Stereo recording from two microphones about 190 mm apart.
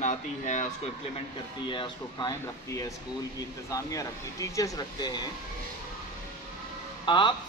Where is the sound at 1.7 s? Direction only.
25° left (ahead or behind).